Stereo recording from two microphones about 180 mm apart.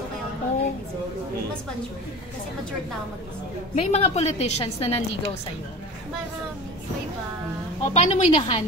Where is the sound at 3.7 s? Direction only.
35° left (ahead or behind).